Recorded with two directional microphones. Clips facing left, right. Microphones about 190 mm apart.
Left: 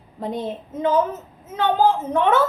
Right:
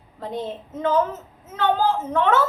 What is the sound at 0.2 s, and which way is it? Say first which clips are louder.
A woman's voice: left 2 dB; 15° left (ahead or behind).